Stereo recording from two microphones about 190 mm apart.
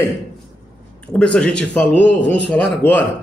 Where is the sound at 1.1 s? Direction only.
5° left (ahead or behind).